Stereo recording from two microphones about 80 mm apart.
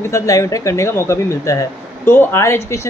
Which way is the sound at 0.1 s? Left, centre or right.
Left.